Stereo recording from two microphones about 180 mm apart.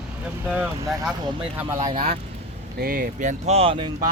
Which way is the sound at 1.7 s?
20° right (ahead or behind).